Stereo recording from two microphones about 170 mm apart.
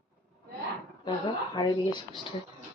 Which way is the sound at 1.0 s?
25° left (ahead or behind).